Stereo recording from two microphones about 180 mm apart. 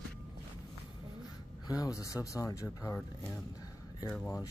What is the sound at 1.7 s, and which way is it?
Speech, 20° left (ahead or behind).